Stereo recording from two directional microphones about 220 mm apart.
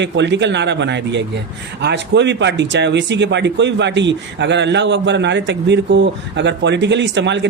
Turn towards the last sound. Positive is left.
turn(degrees=-55)  # may be behind; listen again after turning